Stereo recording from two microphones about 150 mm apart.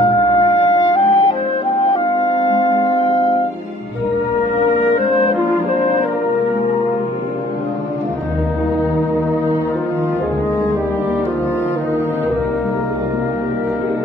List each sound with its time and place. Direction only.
0.6 s music: 30° left (ahead or behind)